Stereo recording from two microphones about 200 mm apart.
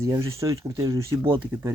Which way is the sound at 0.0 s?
15° right (ahead or behind).